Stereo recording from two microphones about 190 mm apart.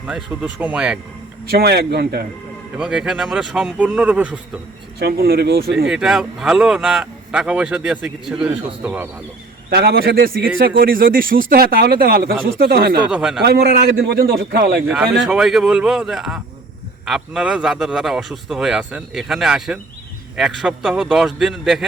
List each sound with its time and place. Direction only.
0.1 s speech: 5° right (ahead or behind)
1.5 s a man's voice: 55° right (ahead or behind)
2.7 s speech: 5° right (ahead or behind)
4.9 s a man's voice: 55° right (ahead or behind)
5.9 s speech: 5° right (ahead or behind)
9.6 s a man's voice: 55° right (ahead or behind)
13.1 s speech: 5° right (ahead or behind)
13.4 s a man's voice: 55° right (ahead or behind)
15.3 s speech: centre (ahead or behind)